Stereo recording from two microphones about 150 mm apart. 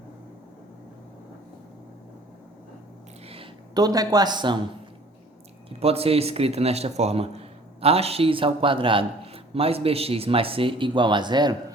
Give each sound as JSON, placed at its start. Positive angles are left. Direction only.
{"t": 3.2, "sound": "a sound", "side_deg": -40}
{"t": 3.8, "sound": "speech", "side_deg": -25}
{"t": 5.8, "sound": "speech", "side_deg": -40}